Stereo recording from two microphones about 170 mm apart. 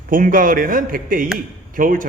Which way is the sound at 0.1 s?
55° right (ahead or behind).